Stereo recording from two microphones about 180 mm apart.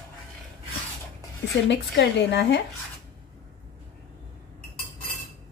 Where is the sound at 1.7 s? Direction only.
70° left (ahead or behind).